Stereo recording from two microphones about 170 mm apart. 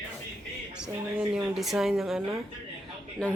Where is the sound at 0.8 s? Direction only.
5° right (ahead or behind).